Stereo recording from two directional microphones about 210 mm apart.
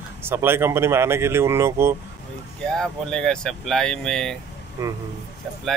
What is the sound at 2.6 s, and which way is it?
Speech, 5° left (ahead or behind).